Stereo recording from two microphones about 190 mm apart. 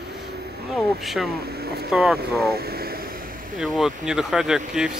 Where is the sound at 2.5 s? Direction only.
55° right (ahead or behind).